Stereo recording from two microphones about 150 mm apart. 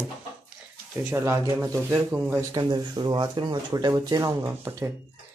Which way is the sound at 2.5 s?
25° right (ahead or behind).